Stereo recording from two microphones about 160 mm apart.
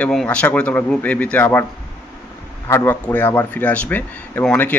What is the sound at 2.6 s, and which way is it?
Speech, 15° left (ahead or behind).